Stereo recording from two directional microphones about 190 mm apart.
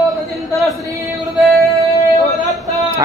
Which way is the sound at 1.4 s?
Centre (ahead or behind).